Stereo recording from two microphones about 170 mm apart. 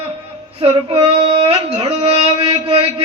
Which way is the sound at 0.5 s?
35° right (ahead or behind).